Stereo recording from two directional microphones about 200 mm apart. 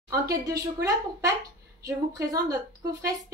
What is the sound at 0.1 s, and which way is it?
Speech, 15° right (ahead or behind).